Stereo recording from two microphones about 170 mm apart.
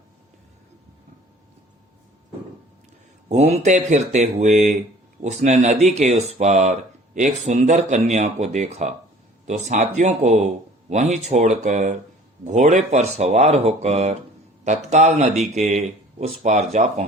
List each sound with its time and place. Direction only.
3.2 s speech: 40° right (ahead or behind)